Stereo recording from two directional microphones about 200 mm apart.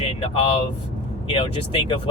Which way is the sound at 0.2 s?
30° left (ahead or behind).